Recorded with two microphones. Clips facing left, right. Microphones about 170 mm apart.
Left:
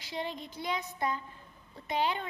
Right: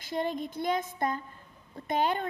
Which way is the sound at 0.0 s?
50° right (ahead or behind).